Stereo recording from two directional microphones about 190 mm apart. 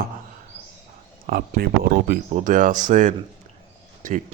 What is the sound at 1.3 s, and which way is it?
Speech, 50° right (ahead or behind).